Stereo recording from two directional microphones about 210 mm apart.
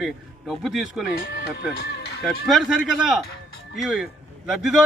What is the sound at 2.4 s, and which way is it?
A man's voice, 5° right (ahead or behind).